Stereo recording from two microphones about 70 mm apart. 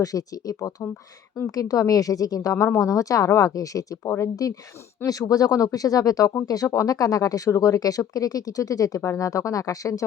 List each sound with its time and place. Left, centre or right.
0.0 s speech: left